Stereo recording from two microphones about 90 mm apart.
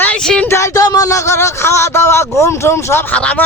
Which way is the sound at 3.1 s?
15° left (ahead or behind).